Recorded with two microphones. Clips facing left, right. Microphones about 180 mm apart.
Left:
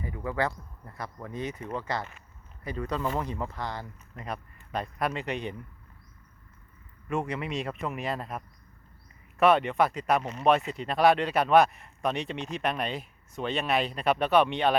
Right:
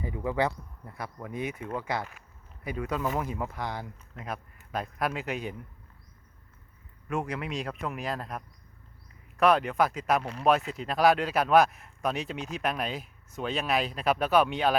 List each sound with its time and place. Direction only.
0.0 s speech: 20° right (ahead or behind); by 5.5 s 5° right (ahead or behind)
7.1 s speech: centre (ahead or behind)